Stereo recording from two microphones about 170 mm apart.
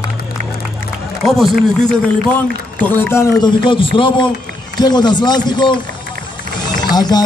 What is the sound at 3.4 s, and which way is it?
Speech, 30° left (ahead or behind).